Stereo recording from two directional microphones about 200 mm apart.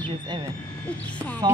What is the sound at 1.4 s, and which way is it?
Speech, 20° right (ahead or behind).